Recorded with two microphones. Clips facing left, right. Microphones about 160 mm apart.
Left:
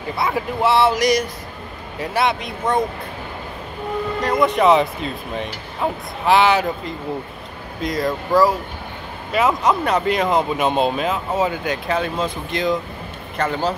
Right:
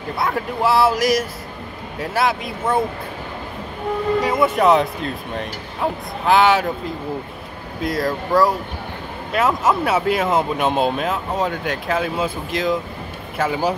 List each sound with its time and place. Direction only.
0.1 s speech: centre (ahead or behind)
4.2 s speech: 5° right (ahead or behind)